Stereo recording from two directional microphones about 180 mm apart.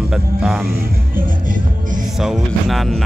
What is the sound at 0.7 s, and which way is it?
Music, 55° right (ahead or behind).